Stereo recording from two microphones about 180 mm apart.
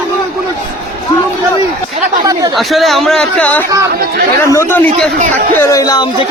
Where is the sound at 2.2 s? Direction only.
20° right (ahead or behind).